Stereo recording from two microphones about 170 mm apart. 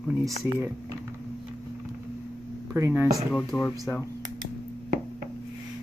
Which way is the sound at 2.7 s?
15° right (ahead or behind).